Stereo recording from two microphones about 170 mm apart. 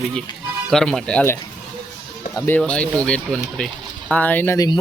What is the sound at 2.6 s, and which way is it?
Speech, 5° left (ahead or behind).